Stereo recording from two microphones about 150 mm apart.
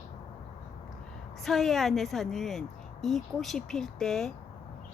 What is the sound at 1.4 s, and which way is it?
Speech, centre (ahead or behind).